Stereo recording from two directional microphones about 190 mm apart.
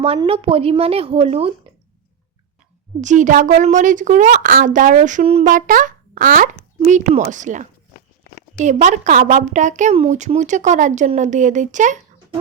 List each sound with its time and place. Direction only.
0.0 s a woman's voice: 30° right (ahead or behind)
3.0 s a woman's voice: 40° right (ahead or behind)